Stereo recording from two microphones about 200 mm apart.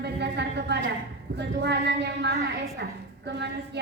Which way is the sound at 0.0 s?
55° right (ahead or behind).